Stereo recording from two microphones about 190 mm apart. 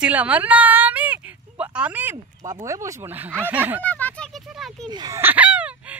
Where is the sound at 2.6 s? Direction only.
15° right (ahead or behind).